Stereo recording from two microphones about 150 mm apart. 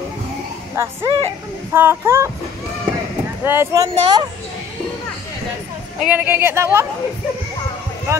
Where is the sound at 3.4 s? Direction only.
15° right (ahead or behind).